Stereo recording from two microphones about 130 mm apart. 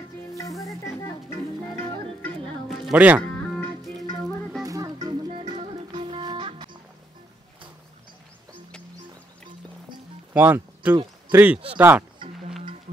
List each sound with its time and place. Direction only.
0.4 s music: 25° left (ahead or behind)
2.9 s speech: 10° right (ahead or behind)
3.5 s music: centre (ahead or behind)
4.6 s music: 25° right (ahead or behind)
5.3 s music: 55° right (ahead or behind)
5.9 s music: 40° right (ahead or behind)
10.3 s speech: 15° right (ahead or behind)
12.2 s music: 40° right (ahead or behind)